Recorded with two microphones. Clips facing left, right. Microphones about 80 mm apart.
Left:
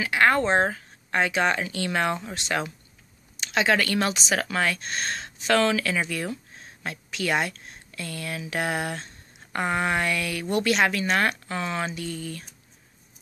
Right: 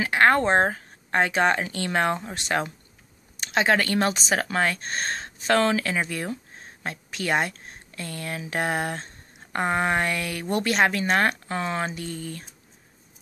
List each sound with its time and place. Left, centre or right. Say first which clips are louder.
0.0 s speech: right 2 dB; right